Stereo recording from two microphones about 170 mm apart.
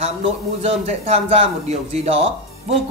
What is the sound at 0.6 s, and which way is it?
Speech, 40° right (ahead or behind).